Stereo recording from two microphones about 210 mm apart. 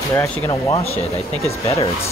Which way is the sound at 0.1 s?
15° left (ahead or behind).